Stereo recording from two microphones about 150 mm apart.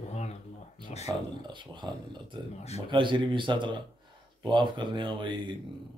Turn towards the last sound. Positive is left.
turn(degrees=-35)  # may be behind; listen again after turning